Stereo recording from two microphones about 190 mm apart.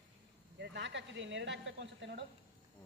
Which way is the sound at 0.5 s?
65° right (ahead or behind).